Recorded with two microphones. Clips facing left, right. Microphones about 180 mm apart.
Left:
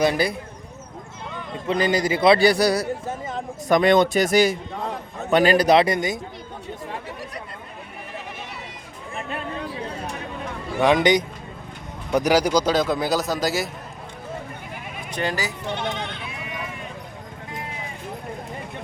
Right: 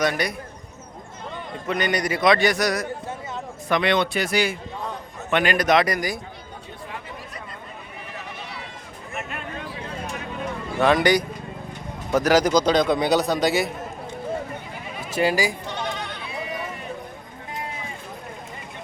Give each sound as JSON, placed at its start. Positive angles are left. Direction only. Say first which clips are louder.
{"t": 0.0, "sound": "speech", "louder": "left 3 dB", "side_deg": 30}
{"t": 1.6, "sound": "a man's voice", "louder": "left 3 dB", "side_deg": 30}
{"t": 3.7, "sound": "a man's voice", "louder": "left 5 dB", "side_deg": 45}
{"t": 9.1, "sound": "a sound", "louder": "left 3 dB", "side_deg": 30}
{"t": 10.8, "sound": "a man's voice", "louder": "left 1 dB", "side_deg": 15}
{"t": 15.1, "sound": "speech", "louder": "right 5 dB", "side_deg": -10}
{"t": 15.7, "sound": "bleat", "louder": "left 2 dB", "side_deg": 20}
{"t": 16.3, "sound": "clip-clop", "louder": "right 4 dB", "side_deg": -35}